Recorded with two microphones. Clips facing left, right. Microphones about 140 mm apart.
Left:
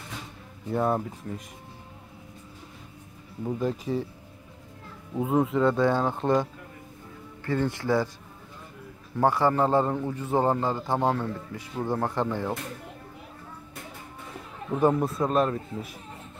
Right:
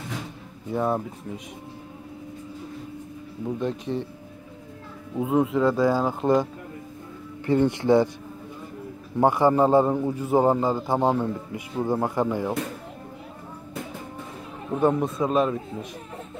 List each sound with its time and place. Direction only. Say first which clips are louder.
0.7 s speech: right 1 dB; centre (ahead or behind)
3.4 s speech: right 1 dB; 5° left (ahead or behind)
5.1 s speech: right 2 dB; centre (ahead or behind)
7.4 s speech: right 6 dB; 20° right (ahead or behind)
9.2 s a man's voice: right 4 dB; 15° right (ahead or behind)
14.8 s speech: right 1 dB; 5° left (ahead or behind)